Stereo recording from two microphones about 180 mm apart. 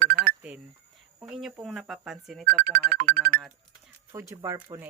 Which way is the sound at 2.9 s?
60° right (ahead or behind).